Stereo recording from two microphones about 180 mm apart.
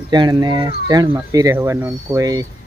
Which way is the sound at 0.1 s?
25° right (ahead or behind).